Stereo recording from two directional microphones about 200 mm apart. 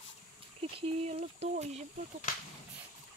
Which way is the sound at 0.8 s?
30° right (ahead or behind).